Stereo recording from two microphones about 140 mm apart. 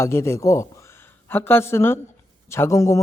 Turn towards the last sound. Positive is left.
turn(degrees=20)  # may be behind; listen again after turning